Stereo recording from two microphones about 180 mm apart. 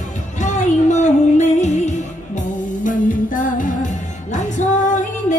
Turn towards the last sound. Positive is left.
turn(degrees=45)  # may be behind; listen again after turning